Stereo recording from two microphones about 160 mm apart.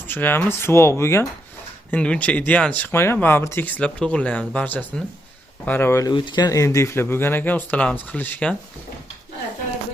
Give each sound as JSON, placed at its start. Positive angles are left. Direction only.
{"t": 0.1, "sound": "speech", "side_deg": 10}